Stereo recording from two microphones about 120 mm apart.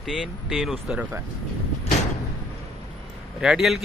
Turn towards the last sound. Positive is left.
turn(degrees=-5)  # may be behind; listen again after turning